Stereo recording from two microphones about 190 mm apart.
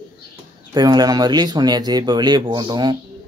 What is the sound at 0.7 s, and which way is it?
Speech, 20° right (ahead or behind).